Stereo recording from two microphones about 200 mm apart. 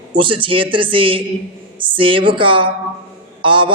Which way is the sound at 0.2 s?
25° right (ahead or behind).